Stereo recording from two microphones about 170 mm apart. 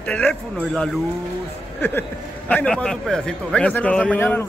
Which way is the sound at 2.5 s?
5° left (ahead or behind).